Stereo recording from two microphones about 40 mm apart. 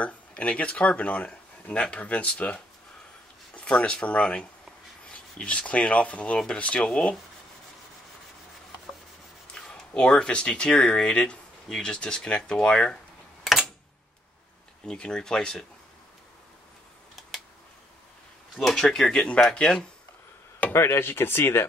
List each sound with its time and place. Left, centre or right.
0.0 s speech: left
9.5 s speech: left
13.4 s a sound: centre
14.9 s speech: centre
18.6 s speech: centre
20.7 s speech: left